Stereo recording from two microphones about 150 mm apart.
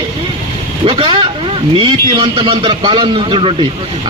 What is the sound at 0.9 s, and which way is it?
A man's voice, 35° right (ahead or behind).